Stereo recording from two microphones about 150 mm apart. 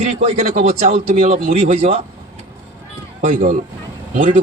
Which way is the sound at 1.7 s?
40° right (ahead or behind).